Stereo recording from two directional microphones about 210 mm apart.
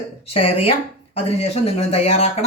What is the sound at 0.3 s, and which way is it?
Speech, 25° left (ahead or behind).